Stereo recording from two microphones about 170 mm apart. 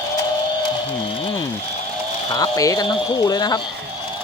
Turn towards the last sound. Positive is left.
turn(degrees=25)  # may be behind; listen again after turning